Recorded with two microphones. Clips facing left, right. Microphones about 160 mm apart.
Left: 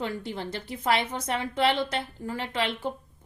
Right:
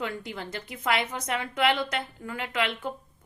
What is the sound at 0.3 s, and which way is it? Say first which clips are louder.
A woman's voice: left 3 dB; 30° left (ahead or behind).